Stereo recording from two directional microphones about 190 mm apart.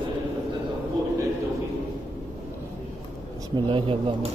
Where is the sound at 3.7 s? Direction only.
25° right (ahead or behind).